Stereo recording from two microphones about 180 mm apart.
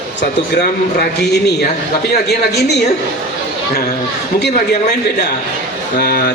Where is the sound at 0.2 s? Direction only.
65° left (ahead or behind).